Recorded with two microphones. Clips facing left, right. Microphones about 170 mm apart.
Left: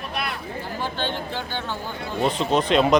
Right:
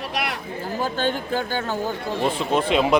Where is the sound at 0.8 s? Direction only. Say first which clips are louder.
Right 5 dB; 45° right (ahead or behind).